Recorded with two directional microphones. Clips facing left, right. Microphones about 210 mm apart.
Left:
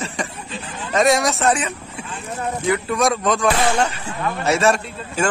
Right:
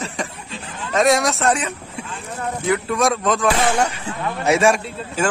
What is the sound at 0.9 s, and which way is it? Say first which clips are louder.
Speech: even; centre (ahead or behind).